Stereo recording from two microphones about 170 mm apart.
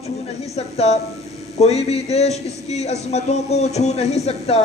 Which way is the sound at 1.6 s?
40° left (ahead or behind).